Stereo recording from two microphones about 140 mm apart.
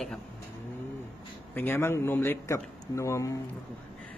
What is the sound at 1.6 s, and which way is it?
A man's voice, 15° left (ahead or behind).